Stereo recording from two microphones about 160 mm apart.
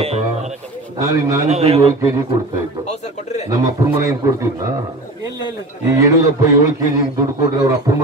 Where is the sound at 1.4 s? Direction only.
40° right (ahead or behind).